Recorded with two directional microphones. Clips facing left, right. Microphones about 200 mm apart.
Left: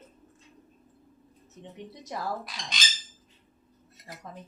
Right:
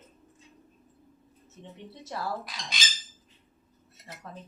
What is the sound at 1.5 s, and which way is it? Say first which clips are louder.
Speech: left 2 dB; 15° left (ahead or behind).